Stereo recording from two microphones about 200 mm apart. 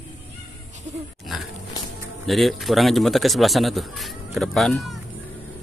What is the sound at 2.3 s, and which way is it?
Speech, centre (ahead or behind).